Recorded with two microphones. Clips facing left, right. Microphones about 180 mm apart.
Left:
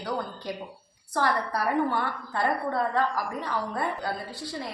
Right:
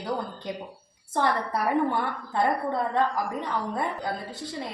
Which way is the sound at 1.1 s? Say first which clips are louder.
Right 1 dB; 20° right (ahead or behind).